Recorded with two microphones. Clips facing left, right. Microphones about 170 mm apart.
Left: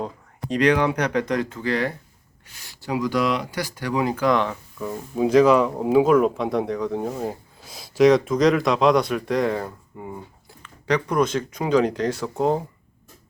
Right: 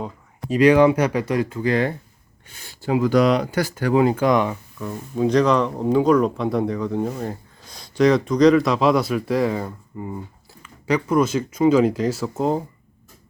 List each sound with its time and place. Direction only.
0.5 s speech: 5° right (ahead or behind)
2.8 s speech: 50° right (ahead or behind)
4.1 s speech: 20° right (ahead or behind)
4.8 s speech: 10° left (ahead or behind)
10.6 s speech: 5° right (ahead or behind)